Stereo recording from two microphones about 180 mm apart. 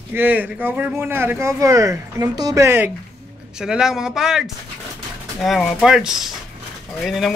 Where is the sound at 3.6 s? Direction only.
5° right (ahead or behind).